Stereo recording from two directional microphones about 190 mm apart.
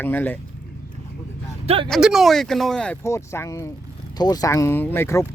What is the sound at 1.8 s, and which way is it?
Speech, centre (ahead or behind).